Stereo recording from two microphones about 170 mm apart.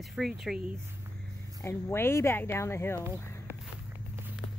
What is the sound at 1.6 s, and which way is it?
Speech, 15° left (ahead or behind).